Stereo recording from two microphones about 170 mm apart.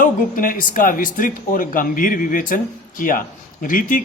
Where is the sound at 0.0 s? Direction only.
55° left (ahead or behind).